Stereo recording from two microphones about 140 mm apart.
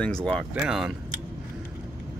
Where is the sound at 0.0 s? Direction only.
5° left (ahead or behind).